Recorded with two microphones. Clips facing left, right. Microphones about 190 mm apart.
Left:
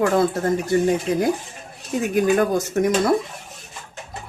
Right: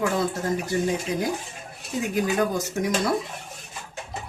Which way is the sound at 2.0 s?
55° left (ahead or behind).